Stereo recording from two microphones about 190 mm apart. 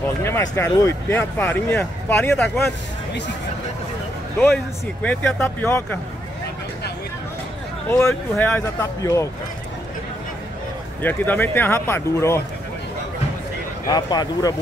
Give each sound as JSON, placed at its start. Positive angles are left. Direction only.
{"t": 0.2, "sound": "speech", "side_deg": 15}
{"t": 5.0, "sound": "speech", "side_deg": 10}
{"t": 7.9, "sound": "speech", "side_deg": 15}
{"t": 11.0, "sound": "speech", "side_deg": 10}
{"t": 13.8, "sound": "speech", "side_deg": 20}